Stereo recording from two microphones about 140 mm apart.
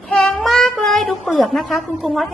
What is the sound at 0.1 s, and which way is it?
Child singing, 5° left (ahead or behind).